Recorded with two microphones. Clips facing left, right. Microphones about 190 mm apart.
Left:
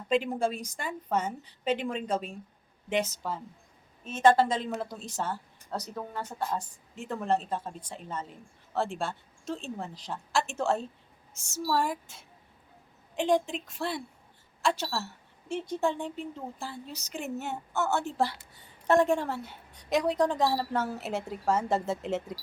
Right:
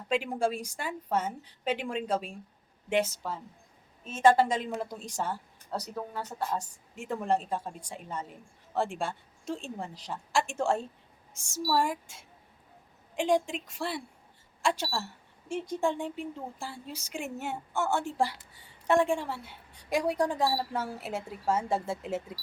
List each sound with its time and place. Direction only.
0.1 s a woman's voice: 10° right (ahead or behind)
18.9 s a woman's voice: 40° left (ahead or behind)
19.9 s speech: 10° right (ahead or behind)